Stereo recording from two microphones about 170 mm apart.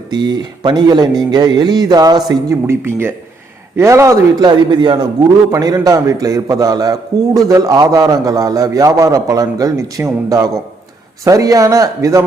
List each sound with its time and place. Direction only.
0.1 s a man's voice: 25° right (ahead or behind)